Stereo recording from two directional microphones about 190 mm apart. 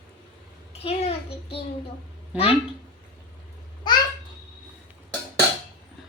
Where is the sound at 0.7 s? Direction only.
30° left (ahead or behind).